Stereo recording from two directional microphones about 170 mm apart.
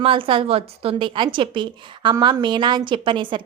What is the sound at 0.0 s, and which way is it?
A woman's voice, 30° right (ahead or behind).